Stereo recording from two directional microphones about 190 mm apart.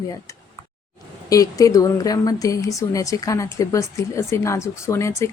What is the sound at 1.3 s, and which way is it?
Speech, 20° left (ahead or behind).